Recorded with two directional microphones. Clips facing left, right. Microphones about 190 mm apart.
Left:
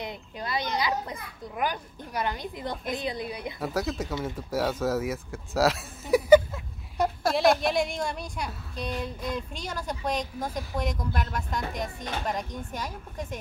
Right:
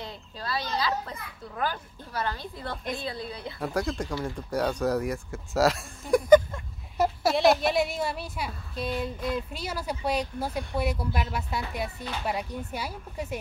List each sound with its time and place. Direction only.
0.0 s a child's voice: 15° left (ahead or behind)
3.5 s a woman's voice: centre (ahead or behind)
7.0 s a woman's voice: 5° right (ahead or behind)